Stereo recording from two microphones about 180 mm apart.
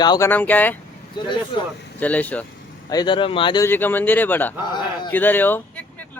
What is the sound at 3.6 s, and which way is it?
Speech, 10° left (ahead or behind).